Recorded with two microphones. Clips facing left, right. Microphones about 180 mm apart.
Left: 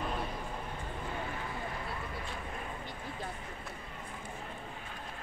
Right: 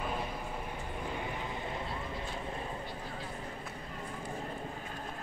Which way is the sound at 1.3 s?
20° right (ahead or behind).